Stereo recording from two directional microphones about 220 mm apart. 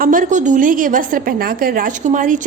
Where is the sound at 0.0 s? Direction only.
40° right (ahead or behind).